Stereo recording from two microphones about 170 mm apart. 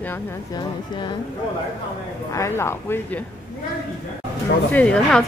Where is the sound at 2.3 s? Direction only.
15° left (ahead or behind).